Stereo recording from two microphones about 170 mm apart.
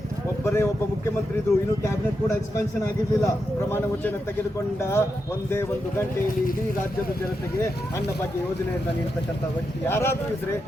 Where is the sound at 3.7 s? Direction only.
10° left (ahead or behind).